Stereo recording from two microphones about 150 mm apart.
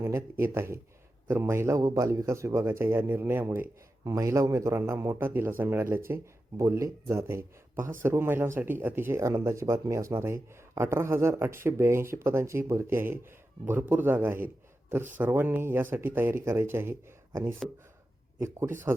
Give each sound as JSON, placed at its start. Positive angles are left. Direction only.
{"t": 0.0, "sound": "speech", "side_deg": -15}